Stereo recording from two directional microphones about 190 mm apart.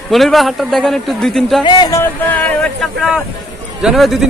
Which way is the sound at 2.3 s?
5° left (ahead or behind).